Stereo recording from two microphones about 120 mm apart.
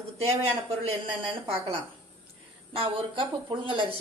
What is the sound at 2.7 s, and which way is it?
Speech, 50° right (ahead or behind).